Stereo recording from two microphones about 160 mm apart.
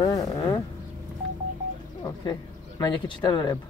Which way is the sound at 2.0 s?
25° left (ahead or behind).